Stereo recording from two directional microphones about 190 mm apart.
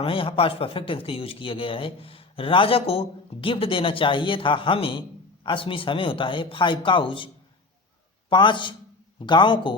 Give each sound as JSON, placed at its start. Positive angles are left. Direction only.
{"t": 0.0, "sound": "speech", "side_deg": 30}
{"t": 8.3, "sound": "speech", "side_deg": 25}